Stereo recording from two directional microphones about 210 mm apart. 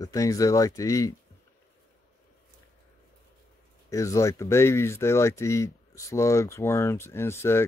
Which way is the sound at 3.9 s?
15° left (ahead or behind).